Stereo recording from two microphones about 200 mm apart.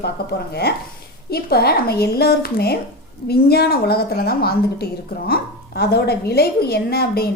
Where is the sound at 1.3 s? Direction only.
50° left (ahead or behind).